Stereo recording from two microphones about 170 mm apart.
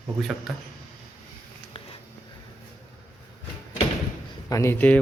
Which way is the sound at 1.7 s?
35° left (ahead or behind).